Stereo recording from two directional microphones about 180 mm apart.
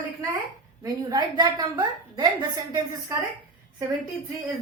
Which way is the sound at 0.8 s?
20° right (ahead or behind).